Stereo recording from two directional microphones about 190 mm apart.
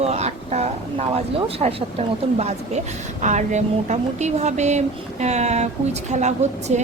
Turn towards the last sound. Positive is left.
turn(degrees=-40)  # may be behind; listen again after turning